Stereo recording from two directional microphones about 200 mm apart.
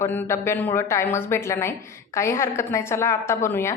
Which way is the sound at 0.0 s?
10° left (ahead or behind).